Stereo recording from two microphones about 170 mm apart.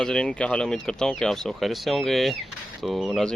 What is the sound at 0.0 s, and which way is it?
Speech, 5° left (ahead or behind).